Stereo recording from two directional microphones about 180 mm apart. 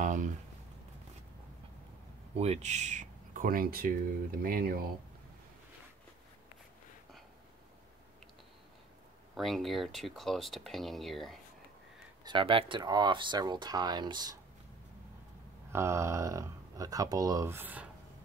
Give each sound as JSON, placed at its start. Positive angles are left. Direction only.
{"t": 0.0, "sound": "a sound", "side_deg": -45}
{"t": 2.3, "sound": "speech", "side_deg": -35}
{"t": 9.3, "sound": "speech", "side_deg": 0}
{"t": 12.3, "sound": "speech", "side_deg": -30}
{"t": 15.7, "sound": "speech", "side_deg": -15}